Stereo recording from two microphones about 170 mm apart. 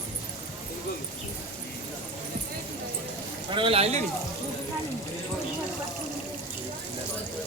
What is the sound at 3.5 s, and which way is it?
Speech, 30° right (ahead or behind).